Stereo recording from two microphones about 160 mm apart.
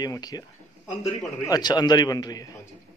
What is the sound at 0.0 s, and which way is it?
A man's voice, 25° left (ahead or behind).